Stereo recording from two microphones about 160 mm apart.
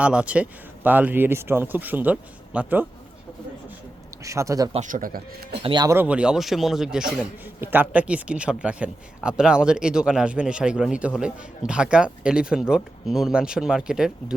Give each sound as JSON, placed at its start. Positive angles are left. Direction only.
{"t": 0.0, "sound": "speech", "side_deg": -5}
{"t": 4.2, "sound": "speech", "side_deg": -20}
{"t": 4.7, "sound": "speech", "side_deg": -50}
{"t": 5.6, "sound": "speech", "side_deg": -30}
{"t": 5.9, "sound": "speech", "side_deg": -10}